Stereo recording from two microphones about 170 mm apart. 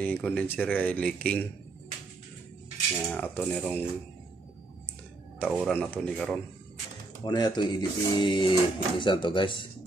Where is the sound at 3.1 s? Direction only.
10° left (ahead or behind).